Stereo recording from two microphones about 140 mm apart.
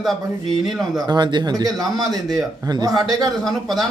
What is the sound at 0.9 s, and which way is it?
A man's voice, 30° right (ahead or behind).